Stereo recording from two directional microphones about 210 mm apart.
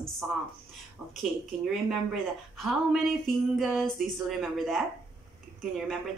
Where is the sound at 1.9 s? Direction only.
Centre (ahead or behind).